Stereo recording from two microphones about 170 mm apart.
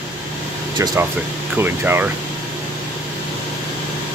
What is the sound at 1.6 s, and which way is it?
Speech, 15° right (ahead or behind).